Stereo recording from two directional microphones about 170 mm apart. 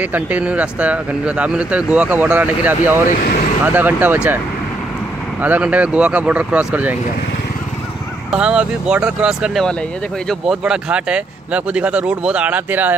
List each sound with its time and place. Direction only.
0.0 s speech: 10° right (ahead or behind)
3.1 s speech: 50° left (ahead or behind)
3.6 s speech: 10° right (ahead or behind)
5.4 s speech: 10° right (ahead or behind)
8.3 s speech: 5° right (ahead or behind)